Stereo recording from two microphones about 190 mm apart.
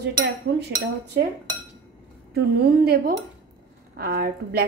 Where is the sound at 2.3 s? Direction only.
55° right (ahead or behind).